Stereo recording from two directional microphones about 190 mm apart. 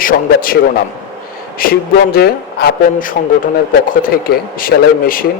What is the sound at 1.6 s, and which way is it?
Speech, 50° left (ahead or behind).